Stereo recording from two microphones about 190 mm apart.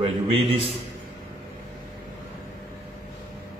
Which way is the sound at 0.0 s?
30° right (ahead or behind).